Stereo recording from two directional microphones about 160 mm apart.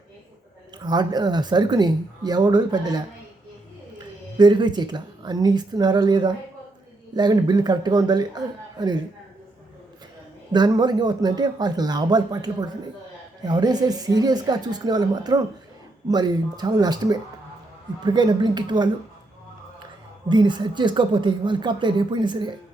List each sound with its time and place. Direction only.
0.9 s a woman's voice: 25° right (ahead or behind)
10.5 s a woman's voice: 25° right (ahead or behind)